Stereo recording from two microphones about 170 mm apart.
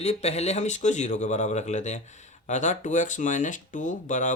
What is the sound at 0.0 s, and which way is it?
Speech, 40° left (ahead or behind).